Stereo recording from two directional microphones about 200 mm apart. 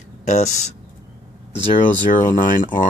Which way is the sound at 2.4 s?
40° left (ahead or behind).